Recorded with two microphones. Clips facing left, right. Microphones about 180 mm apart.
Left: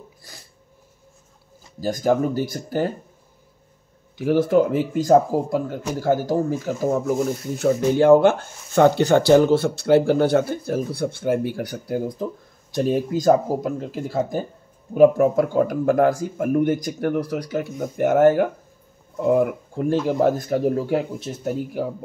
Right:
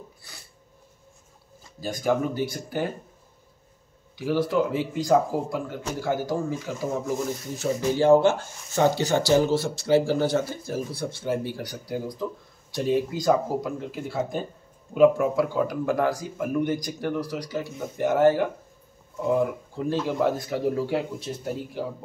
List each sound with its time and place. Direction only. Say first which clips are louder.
1.8 s speech: left 5 dB; 45° left (ahead or behind)
4.2 s speech: left 6 dB; 50° left (ahead or behind)